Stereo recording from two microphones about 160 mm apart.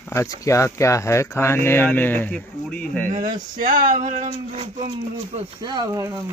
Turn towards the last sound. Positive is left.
turn(degrees=-20)  # may be behind; listen again after turning